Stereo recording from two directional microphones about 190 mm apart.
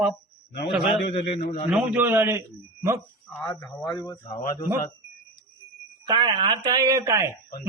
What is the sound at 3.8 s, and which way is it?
Speech, 20° left (ahead or behind).